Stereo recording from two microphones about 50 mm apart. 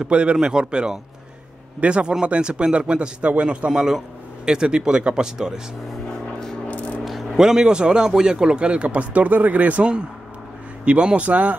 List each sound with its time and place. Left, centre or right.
0.0 s speech: right
6.0 s music: centre
6.7 s a sound: left
7.3 s speech: centre; by 11.5 s right